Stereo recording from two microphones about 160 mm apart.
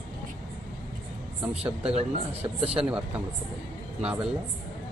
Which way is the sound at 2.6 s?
40° right (ahead or behind).